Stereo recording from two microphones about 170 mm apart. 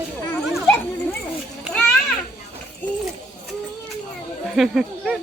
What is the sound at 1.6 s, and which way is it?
Children playing, 5° left (ahead or behind).